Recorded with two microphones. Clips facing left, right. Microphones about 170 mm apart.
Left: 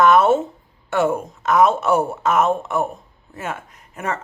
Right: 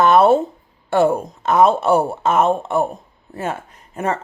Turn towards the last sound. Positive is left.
turn(degrees=-30)  # may be behind; listen again after turning